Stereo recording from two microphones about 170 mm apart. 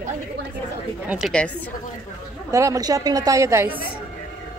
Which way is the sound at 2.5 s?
20° right (ahead or behind).